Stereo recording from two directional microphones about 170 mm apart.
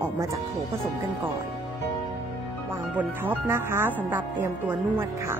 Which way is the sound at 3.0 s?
15° right (ahead or behind).